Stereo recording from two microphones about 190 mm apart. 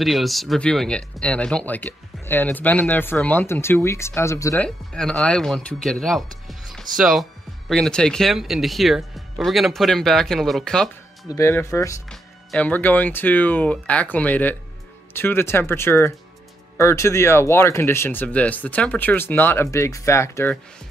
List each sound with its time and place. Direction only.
0.0 s speech: centre (ahead or behind); by 4.6 s 15° left (ahead or behind)
4.6 s speech: 5° left (ahead or behind)
11.2 s speech: 15° left (ahead or behind)
12.1 s speech: 5° left (ahead or behind)